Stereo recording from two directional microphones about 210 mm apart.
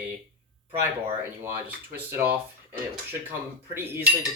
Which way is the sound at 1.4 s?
10° right (ahead or behind).